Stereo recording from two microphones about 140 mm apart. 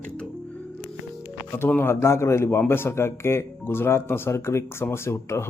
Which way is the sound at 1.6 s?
15° left (ahead or behind).